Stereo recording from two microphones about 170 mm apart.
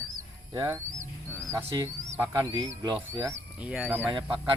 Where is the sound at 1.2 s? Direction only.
10° left (ahead or behind).